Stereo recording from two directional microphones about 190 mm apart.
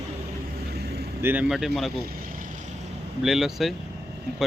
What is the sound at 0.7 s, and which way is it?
Boat, 60° right (ahead or behind).